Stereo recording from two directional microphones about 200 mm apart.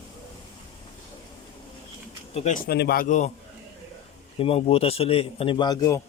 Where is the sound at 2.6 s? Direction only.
55° left (ahead or behind); by 3.3 s 35° left (ahead or behind).